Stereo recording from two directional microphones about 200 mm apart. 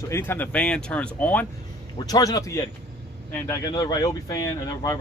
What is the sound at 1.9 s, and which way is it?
Speech, 20° left (ahead or behind).